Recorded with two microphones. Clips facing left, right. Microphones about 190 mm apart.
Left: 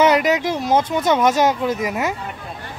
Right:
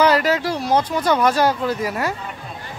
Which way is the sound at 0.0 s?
20° left (ahead or behind).